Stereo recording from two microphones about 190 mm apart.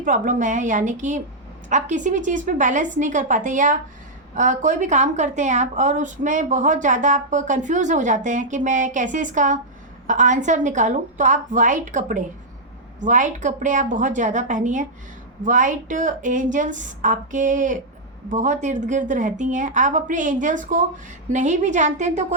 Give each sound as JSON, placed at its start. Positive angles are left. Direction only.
{"t": 0.0, "sound": "a woman's voice", "side_deg": -45}